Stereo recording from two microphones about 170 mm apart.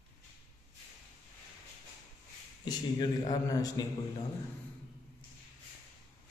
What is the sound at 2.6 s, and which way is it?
A man's voice, 25° left (ahead or behind).